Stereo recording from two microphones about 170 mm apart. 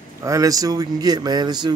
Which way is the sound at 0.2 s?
20° right (ahead or behind).